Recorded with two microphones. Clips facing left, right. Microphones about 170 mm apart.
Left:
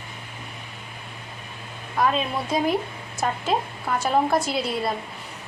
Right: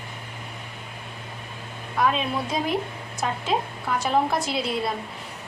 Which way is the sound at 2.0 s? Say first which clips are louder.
Left 1 dB; centre (ahead or behind).